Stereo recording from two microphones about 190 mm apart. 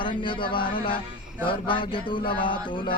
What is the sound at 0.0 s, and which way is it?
Speech, 25° left (ahead or behind).